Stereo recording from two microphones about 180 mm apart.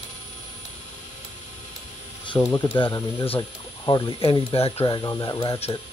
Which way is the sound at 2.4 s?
30° left (ahead or behind).